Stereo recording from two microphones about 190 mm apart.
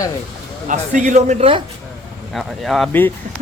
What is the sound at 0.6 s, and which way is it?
Speech, 40° right (ahead or behind).